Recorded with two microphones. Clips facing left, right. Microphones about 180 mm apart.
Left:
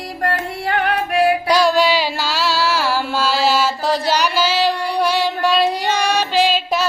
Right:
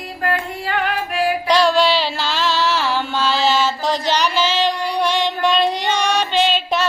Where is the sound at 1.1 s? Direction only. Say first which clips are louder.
Left 5 dB; 70° left (ahead or behind).